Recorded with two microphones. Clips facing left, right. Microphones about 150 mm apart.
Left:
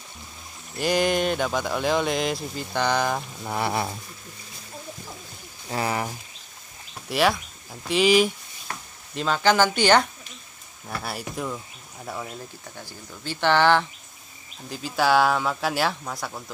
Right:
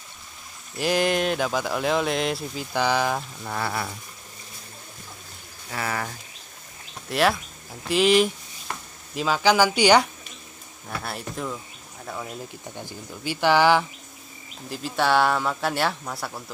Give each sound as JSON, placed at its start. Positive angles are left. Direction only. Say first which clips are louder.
{"t": 0.7, "sound": "speech", "louder": "even", "side_deg": 0}
{"t": 3.4, "sound": "speech", "louder": "left 4 dB", "side_deg": 15}
{"t": 5.7, "sound": "speech", "louder": "left 3 dB", "side_deg": 20}
{"t": 7.1, "sound": "speech", "louder": "even", "side_deg": 0}
{"t": 10.9, "sound": "speech", "louder": "even", "side_deg": 5}
{"t": 12.6, "sound": "speech", "louder": "right 4 dB", "side_deg": -20}